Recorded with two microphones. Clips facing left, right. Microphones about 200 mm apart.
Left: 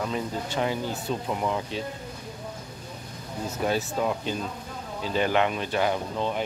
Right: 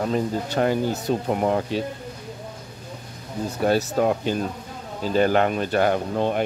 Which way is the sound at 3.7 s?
55° right (ahead or behind).